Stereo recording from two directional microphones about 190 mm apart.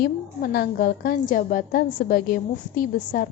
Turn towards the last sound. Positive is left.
turn(degrees=50)  # may be behind; listen again after turning